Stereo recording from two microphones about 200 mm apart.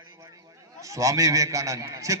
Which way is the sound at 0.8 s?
15° right (ahead or behind).